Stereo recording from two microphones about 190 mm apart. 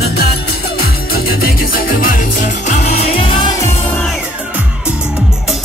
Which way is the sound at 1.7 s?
45° left (ahead or behind).